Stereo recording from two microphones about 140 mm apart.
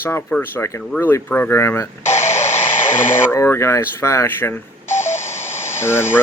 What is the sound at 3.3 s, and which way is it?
Speech, 20° left (ahead or behind).